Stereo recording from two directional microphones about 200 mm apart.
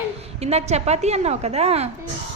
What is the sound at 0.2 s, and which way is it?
A woman's voice, 30° right (ahead or behind).